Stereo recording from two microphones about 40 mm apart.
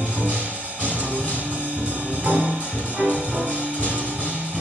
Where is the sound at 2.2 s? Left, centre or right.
Right.